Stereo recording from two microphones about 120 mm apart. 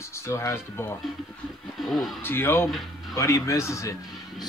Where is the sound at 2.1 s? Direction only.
20° left (ahead or behind).